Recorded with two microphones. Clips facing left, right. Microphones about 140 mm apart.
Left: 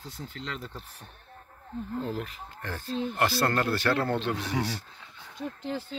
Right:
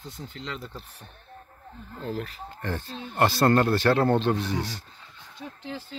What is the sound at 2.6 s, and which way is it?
Speech, 25° right (ahead or behind).